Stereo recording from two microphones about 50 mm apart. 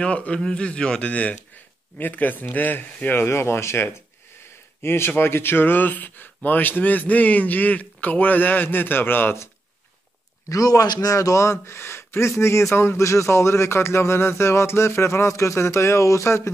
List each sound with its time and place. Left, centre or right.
0.0 s a man's voice: left
2.0 s speech: left
3.3 s speech: left
11.1 s speech: left